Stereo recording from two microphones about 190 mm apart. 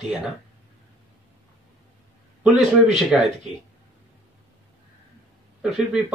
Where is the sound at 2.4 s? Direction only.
5° right (ahead or behind).